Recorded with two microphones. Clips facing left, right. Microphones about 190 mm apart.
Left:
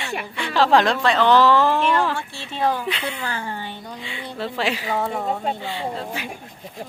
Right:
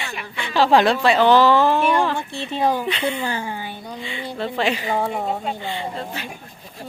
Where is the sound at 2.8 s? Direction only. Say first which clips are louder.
Right 4 dB; centre (ahead or behind).